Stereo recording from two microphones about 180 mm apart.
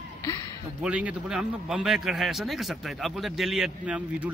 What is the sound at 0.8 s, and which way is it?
A man's voice, 5° right (ahead or behind).